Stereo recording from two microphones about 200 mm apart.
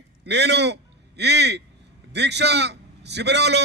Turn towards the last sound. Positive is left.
turn(degrees=-60)  # may be behind; listen again after turning